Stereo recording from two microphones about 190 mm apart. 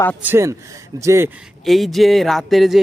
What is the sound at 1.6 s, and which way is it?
Speech, centre (ahead or behind).